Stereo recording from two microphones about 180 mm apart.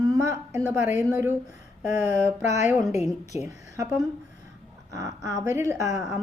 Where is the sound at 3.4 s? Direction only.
15° right (ahead or behind).